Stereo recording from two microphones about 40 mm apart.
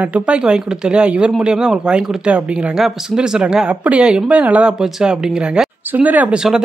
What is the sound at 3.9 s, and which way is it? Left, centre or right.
Speech, right.